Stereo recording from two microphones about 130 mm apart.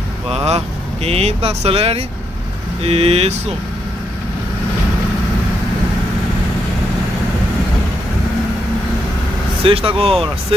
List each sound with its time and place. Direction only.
0.3 s speech: 50° right (ahead or behind)
9.7 s speech: 45° right (ahead or behind)